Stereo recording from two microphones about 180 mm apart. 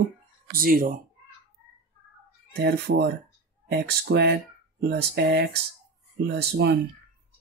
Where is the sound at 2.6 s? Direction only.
65° right (ahead or behind).